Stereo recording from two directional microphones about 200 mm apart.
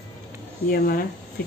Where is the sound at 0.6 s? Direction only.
50° left (ahead or behind).